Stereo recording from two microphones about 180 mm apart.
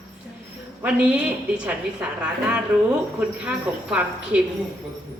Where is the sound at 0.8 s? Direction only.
5° right (ahead or behind).